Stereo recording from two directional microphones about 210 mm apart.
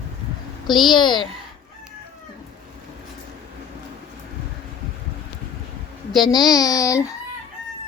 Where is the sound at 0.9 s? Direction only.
20° left (ahead or behind).